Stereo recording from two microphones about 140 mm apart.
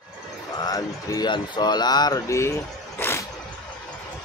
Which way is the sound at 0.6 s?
25° left (ahead or behind).